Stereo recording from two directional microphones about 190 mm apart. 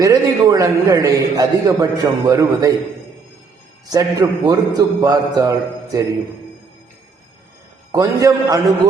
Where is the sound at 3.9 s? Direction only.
15° right (ahead or behind).